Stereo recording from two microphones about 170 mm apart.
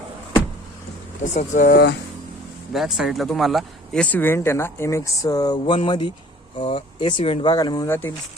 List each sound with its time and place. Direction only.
1.2 s speech: 45° left (ahead or behind); by 2.0 s 65° left (ahead or behind)
2.7 s speech: centre (ahead or behind); by 8.1 s 15° left (ahead or behind)